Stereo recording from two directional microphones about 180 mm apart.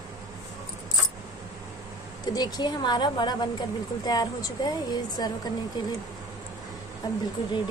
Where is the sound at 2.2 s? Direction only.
20° left (ahead or behind).